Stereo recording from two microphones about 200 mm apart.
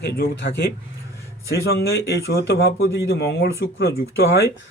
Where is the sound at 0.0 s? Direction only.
50° left (ahead or behind).